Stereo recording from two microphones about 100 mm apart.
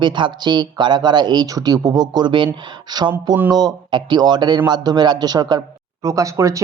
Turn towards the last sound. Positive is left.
turn(degrees=-30)  # may be behind; listen again after turning